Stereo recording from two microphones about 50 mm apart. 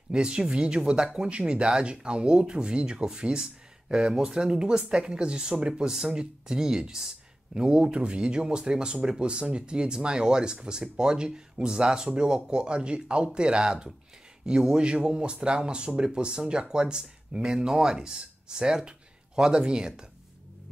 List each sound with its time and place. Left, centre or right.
0.1 s speech: centre